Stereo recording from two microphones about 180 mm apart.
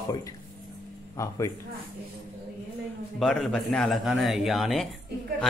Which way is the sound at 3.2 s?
5° left (ahead or behind).